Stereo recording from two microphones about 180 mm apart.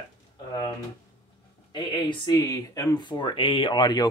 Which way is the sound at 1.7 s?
25° left (ahead or behind).